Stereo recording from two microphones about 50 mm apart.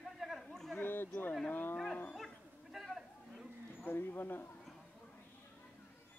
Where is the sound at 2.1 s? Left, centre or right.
Centre.